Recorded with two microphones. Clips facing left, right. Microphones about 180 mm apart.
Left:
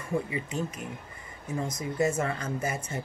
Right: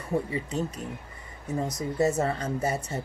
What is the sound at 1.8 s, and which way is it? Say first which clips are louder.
Speech: right 2 dB; 40° right (ahead or behind).